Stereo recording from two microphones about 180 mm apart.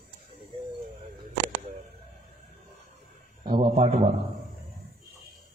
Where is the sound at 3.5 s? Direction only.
30° right (ahead or behind).